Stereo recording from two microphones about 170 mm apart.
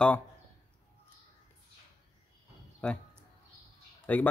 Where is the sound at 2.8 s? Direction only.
5° left (ahead or behind).